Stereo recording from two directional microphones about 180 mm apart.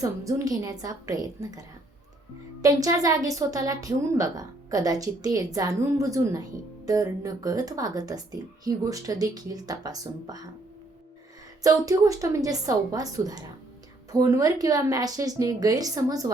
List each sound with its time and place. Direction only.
0.0 s a woman's voice: 20° right (ahead or behind)
11.6 s a woman's voice: 20° right (ahead or behind)